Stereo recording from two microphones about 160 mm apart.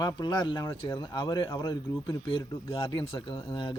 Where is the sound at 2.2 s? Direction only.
35° left (ahead or behind).